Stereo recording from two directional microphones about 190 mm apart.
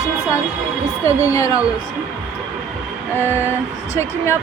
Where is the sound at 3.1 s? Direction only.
15° left (ahead or behind).